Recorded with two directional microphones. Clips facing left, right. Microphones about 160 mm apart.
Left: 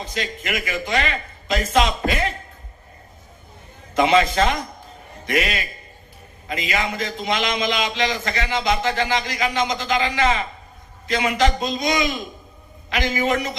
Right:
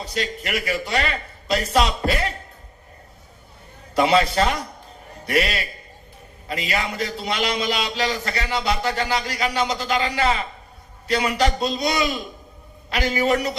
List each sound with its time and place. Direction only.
0.0 s a man's voice: 35° right (ahead or behind)
4.0 s a man's voice: 35° right (ahead or behind)